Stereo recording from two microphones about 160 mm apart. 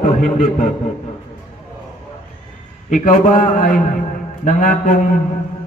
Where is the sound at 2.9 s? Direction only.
55° left (ahead or behind).